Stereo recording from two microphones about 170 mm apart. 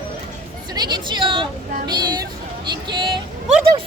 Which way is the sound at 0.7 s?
25° right (ahead or behind).